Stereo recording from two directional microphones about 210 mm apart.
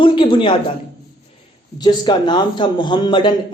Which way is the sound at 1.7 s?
20° left (ahead or behind).